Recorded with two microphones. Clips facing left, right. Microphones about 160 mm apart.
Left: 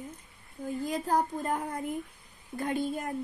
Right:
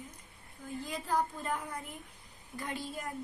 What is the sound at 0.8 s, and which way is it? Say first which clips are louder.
A woman's voice: left 4 dB; 45° left (ahead or behind).